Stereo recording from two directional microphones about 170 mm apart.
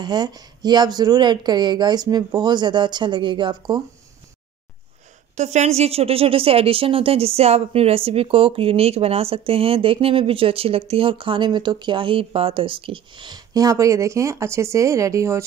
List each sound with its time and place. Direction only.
0.0 s speech: 25° right (ahead or behind)
5.3 s speech: 40° right (ahead or behind); by 15.4 s 20° right (ahead or behind)